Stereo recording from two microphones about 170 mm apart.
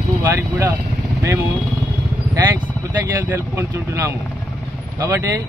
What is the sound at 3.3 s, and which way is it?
A man's voice, 15° right (ahead or behind).